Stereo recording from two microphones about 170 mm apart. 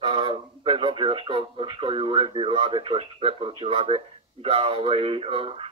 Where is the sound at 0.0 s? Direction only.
30° right (ahead or behind).